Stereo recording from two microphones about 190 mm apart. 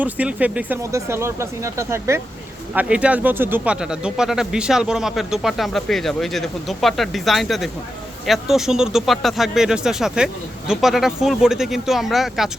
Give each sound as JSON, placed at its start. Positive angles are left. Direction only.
{"t": 0.0, "sound": "speech", "side_deg": -5}